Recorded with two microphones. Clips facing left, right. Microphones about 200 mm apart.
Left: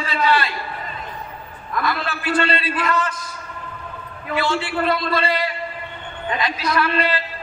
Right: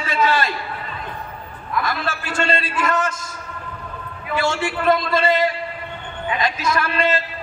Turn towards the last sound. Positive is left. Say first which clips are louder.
# even
turn(degrees=-45)  # may be behind; listen again after turning